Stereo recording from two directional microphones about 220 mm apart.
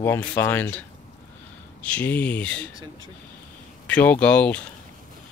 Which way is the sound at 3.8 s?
5° left (ahead or behind).